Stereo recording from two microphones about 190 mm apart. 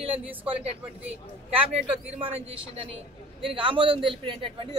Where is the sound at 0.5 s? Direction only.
30° right (ahead or behind).